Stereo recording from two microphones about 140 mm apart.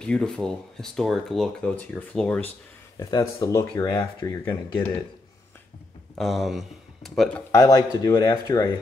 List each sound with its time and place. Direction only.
0.0 s speech: 5° left (ahead or behind)
3.0 s speech: 30° left (ahead or behind)
6.1 s speech: centre (ahead or behind)
7.5 s speech: 25° left (ahead or behind)